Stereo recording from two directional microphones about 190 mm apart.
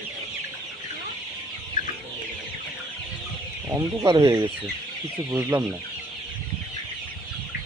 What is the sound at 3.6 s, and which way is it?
Speech, 15° right (ahead or behind).